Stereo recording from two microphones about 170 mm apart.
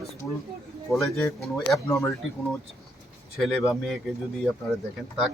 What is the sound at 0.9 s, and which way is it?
Speech, centre (ahead or behind).